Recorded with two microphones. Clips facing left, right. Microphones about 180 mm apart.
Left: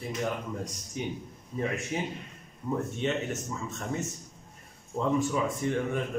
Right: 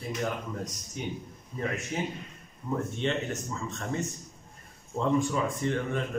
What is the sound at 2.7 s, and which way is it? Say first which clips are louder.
A man's voice: even; 15° left (ahead or behind).